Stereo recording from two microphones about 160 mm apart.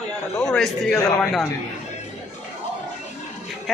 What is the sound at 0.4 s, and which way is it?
A man's voice, 5° left (ahead or behind).